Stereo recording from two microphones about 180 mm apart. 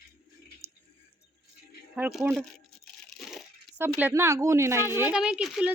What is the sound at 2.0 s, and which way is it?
Speech, centre (ahead or behind).